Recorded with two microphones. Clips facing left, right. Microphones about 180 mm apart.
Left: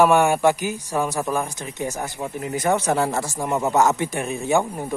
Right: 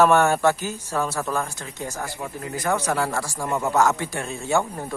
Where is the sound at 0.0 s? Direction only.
15° left (ahead or behind).